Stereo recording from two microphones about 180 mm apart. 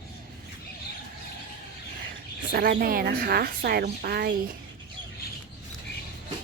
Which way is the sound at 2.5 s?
55° right (ahead or behind).